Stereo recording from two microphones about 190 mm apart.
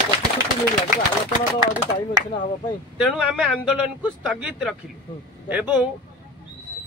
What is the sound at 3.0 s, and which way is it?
A man's voice, 5° right (ahead or behind).